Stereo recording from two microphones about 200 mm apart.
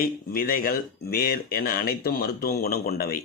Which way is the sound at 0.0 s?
45° left (ahead or behind).